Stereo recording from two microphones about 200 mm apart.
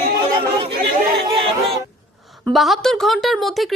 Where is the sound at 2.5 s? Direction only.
Centre (ahead or behind).